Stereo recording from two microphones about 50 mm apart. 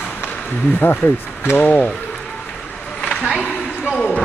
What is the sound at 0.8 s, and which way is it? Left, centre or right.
Speech, left.